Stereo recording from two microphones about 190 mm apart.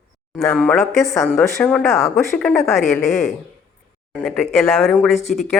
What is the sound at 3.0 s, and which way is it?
Speech, 40° left (ahead or behind).